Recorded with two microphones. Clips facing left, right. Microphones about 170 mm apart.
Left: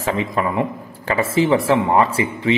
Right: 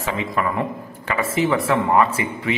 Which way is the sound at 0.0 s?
35° left (ahead or behind).